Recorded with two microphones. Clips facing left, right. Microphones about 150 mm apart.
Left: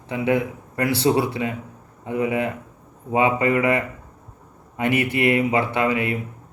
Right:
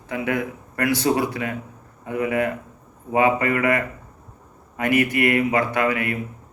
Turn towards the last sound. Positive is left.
turn(degrees=20)  # may be behind; listen again after turning